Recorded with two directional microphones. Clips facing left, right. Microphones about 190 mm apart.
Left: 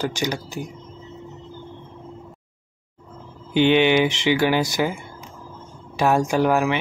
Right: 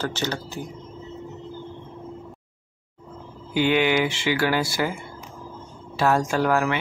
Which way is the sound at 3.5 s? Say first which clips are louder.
Left 4 dB; 20° left (ahead or behind).